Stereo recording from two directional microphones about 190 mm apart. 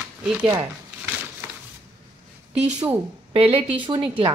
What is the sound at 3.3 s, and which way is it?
Speech, 30° right (ahead or behind).